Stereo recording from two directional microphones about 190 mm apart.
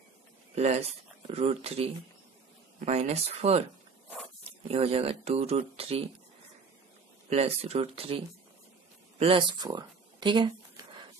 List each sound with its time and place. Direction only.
0.6 s speech: 35° right (ahead or behind)
4.6 s speech: 30° right (ahead or behind)
7.2 s speech: 35° right (ahead or behind)
9.2 s a sound: 25° right (ahead or behind)